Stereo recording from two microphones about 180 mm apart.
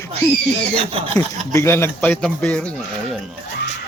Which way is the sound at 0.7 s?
30° right (ahead or behind).